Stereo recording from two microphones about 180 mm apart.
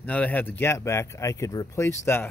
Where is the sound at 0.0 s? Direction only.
10° left (ahead or behind).